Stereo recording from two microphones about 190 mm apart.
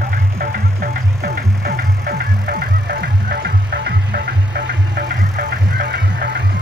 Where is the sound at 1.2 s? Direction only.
55° right (ahead or behind).